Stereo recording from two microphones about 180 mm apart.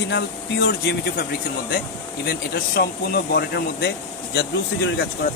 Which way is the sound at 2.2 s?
60° left (ahead or behind).